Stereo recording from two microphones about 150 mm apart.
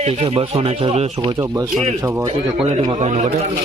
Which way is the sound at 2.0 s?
20° right (ahead or behind).